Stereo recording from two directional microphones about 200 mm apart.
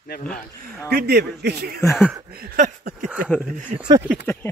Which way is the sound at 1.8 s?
15° left (ahead or behind).